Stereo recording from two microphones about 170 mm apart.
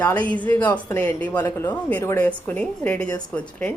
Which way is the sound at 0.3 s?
10° left (ahead or behind).